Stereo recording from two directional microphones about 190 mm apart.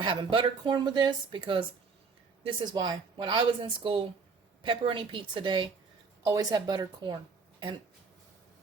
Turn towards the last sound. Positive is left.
turn(degrees=-25)  # may be behind; listen again after turning